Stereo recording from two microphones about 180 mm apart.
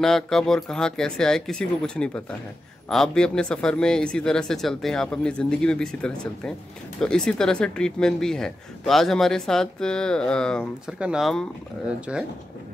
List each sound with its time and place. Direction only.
0.0 s speech: 5° left (ahead or behind)